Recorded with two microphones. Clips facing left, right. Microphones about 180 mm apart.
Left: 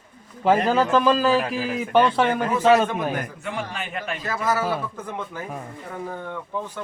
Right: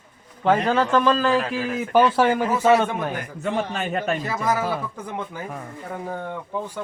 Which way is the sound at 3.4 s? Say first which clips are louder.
Right 5 dB; 40° right (ahead or behind).